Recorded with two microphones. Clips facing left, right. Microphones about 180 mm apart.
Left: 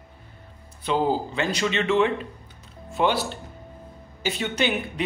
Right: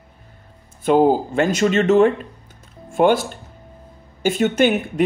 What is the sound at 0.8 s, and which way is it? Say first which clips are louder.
Speech: right 8 dB; 50° right (ahead or behind).